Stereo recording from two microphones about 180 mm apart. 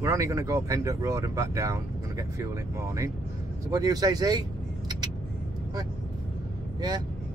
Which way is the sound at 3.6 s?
20° right (ahead or behind).